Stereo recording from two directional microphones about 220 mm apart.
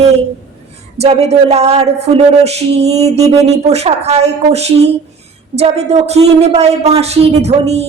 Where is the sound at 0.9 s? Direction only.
30° right (ahead or behind).